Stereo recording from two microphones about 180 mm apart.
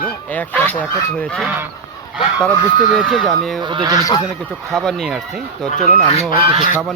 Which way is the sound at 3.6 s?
25° right (ahead or behind).